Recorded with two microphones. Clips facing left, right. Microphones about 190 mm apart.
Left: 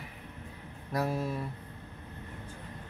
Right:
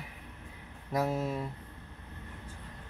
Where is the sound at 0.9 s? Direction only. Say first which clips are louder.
Right 1 dB; 20° right (ahead or behind).